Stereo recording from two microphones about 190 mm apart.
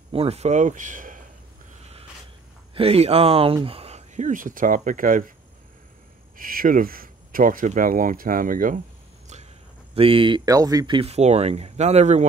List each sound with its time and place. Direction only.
0.1 s speech: 30° right (ahead or behind)
2.7 s speech: 30° right (ahead or behind)
6.3 s speech: 50° right (ahead or behind)
9.9 s speech: 30° right (ahead or behind)